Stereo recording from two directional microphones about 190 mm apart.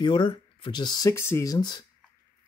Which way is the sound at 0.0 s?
25° left (ahead or behind).